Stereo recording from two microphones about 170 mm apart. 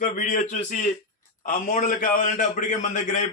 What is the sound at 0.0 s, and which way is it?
A man's voice, 50° left (ahead or behind).